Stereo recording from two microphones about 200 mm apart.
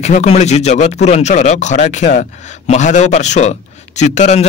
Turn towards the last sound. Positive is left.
turn(degrees=35)  # may be behind; listen again after turning